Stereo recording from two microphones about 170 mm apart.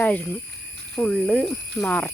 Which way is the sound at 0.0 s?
10° left (ahead or behind).